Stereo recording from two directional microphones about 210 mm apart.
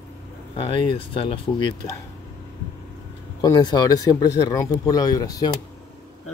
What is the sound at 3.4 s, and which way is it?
Speech, 20° left (ahead or behind).